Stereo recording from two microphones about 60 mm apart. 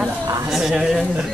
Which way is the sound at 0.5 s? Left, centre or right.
Centre.